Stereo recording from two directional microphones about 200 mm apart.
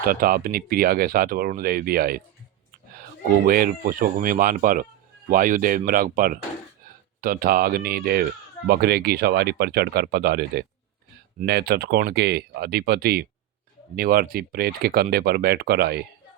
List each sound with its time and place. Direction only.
0.0 s speech: 45° right (ahead or behind)
3.4 s speech: 45° right (ahead or behind)